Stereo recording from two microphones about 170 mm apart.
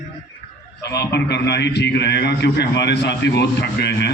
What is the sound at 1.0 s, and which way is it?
A man's voice, 80° left.